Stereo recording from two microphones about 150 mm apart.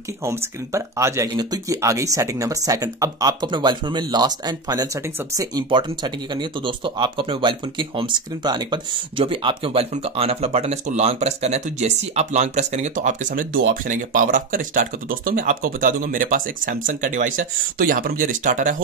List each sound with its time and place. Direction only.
0.2 s speech: 20° right (ahead or behind); by 18.8 s 60° right (ahead or behind)